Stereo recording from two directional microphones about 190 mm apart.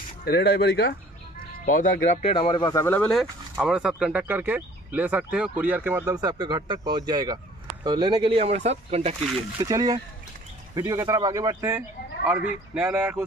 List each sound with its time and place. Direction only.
0.2 s speech: 55° left (ahead or behind)
1.7 s speech: 45° left (ahead or behind)
2.2 s speech: 25° left (ahead or behind)
3.0 s speech: centre (ahead or behind); by 9.1 s 35° right (ahead or behind)
9.6 s speech: 20° right (ahead or behind)